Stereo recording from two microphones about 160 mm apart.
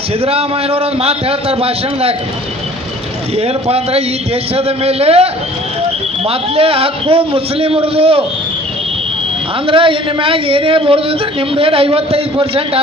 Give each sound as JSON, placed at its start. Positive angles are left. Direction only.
{"t": 0.2, "sound": "a man's voice", "side_deg": -40}
{"t": 3.3, "sound": "a man's voice", "side_deg": -40}
{"t": 9.7, "sound": "a man's voice", "side_deg": -35}